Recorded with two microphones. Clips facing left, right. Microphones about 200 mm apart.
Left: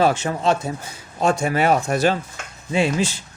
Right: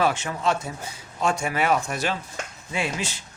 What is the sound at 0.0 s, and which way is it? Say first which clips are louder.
Speech: left 5 dB; 40° left (ahead or behind).